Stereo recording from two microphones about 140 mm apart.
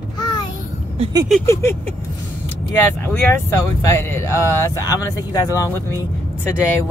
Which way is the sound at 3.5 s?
20° left (ahead or behind).